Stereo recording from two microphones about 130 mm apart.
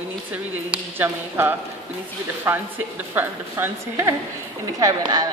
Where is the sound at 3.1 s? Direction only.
20° right (ahead or behind).